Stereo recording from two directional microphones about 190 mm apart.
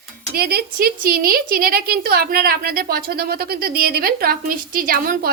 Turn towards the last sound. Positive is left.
turn(degrees=-50)  # may be behind; listen again after turning